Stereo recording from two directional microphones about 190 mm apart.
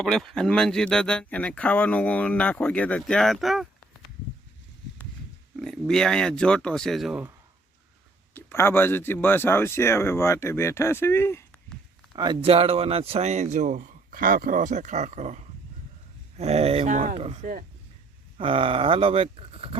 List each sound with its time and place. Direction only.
0.0 s speech: centre (ahead or behind)
5.6 s speech: centre (ahead or behind)
8.3 s speech: 10° left (ahead or behind)
12.1 s a man's voice: 20° right (ahead or behind); by 17.7 s 40° right (ahead or behind)
18.3 s speech: 30° right (ahead or behind)